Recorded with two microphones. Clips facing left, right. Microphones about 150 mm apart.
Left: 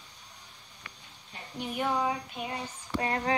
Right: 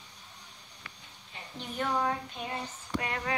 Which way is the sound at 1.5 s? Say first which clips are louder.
Left 2 dB; 10° left (ahead or behind).